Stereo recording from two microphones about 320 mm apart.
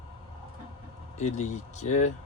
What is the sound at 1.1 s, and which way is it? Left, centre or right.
Speech, left.